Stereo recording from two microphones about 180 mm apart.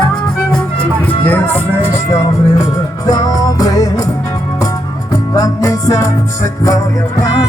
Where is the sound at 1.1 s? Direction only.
10° left (ahead or behind).